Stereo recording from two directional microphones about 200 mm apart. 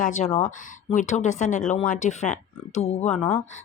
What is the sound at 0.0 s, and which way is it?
Speech, 40° left (ahead or behind).